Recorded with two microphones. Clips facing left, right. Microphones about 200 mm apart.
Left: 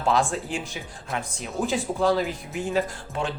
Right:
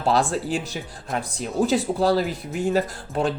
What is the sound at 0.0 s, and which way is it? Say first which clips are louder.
Speech: right 2 dB; 35° right (ahead or behind).